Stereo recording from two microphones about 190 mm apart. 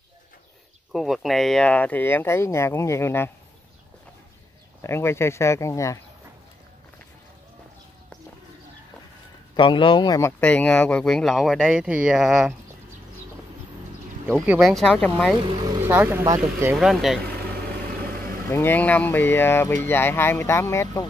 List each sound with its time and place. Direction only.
0.9 s speech: centre (ahead or behind)
4.8 s speech: 15° left (ahead or behind)
9.6 s speech: 25° left (ahead or behind)
10.4 s speech: 5° left (ahead or behind)
14.2 s speech: 10° right (ahead or behind)
15.4 s speech: 20° right (ahead or behind)
15.8 s speech: 10° right (ahead or behind)
16.7 s speech: centre (ahead or behind)
18.5 s speech: 10° left (ahead or behind)